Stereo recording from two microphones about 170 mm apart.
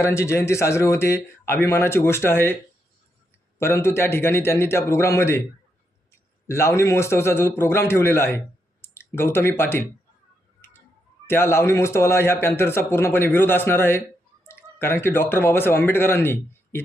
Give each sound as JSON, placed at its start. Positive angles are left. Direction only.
{"t": 0.0, "sound": "a man's voice", "side_deg": 15}
{"t": 3.6, "sound": "a man's voice", "side_deg": 15}
{"t": 6.5, "sound": "a man's voice", "side_deg": 15}
{"t": 11.3, "sound": "a man's voice", "side_deg": 15}